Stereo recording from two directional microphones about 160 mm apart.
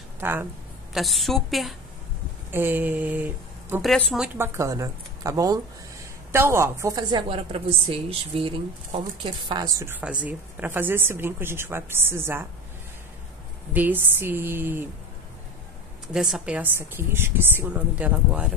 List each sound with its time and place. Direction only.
0.2 s speech: 15° right (ahead or behind)
0.9 s a woman's voice: centre (ahead or behind)
2.5 s speech: 15° right (ahead or behind)
3.8 s a woman's voice: centre (ahead or behind)
4.4 s a woman's voice: 20° right (ahead or behind)
13.7 s a woman's voice: 10° right (ahead or behind)
16.1 s a woman's voice: 5° right (ahead or behind)